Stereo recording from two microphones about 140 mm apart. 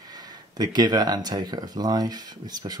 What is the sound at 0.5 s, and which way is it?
Speech, 30° right (ahead or behind).